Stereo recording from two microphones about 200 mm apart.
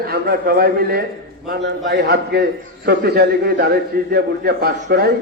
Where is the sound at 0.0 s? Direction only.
50° right (ahead or behind).